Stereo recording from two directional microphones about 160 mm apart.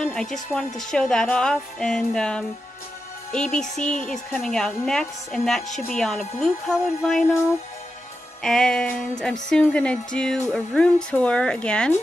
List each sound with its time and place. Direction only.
0.0 s a woman's voice: 5° left (ahead or behind)
8.4 s a woman's voice: 5° left (ahead or behind)